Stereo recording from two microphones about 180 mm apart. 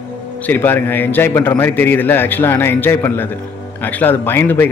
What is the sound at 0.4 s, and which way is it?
A man's voice, 10° left (ahead or behind).